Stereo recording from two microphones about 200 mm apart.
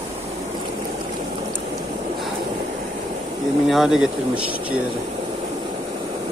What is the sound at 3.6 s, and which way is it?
Speech, centre (ahead or behind).